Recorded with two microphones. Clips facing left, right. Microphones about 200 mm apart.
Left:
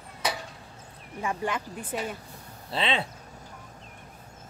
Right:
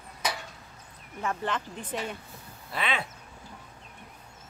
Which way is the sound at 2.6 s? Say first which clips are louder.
Left 3 dB; 30° left (ahead or behind).